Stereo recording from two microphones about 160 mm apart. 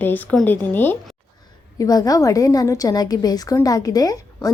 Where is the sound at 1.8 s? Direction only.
25° left (ahead or behind).